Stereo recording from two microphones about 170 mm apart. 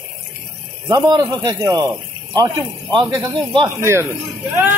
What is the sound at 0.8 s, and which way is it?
Speech, 20° right (ahead or behind).